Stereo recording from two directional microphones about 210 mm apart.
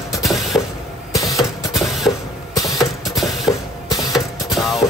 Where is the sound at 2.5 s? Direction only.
15° left (ahead or behind).